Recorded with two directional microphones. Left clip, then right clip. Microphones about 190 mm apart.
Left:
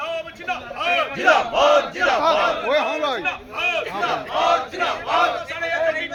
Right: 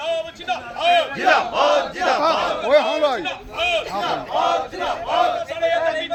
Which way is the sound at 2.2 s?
55° right (ahead or behind).